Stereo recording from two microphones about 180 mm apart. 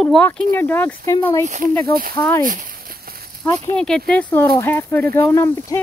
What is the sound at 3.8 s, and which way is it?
Speech, 5° left (ahead or behind).